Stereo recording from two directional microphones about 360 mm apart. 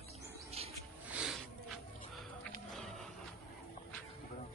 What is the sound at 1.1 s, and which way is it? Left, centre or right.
Music, centre.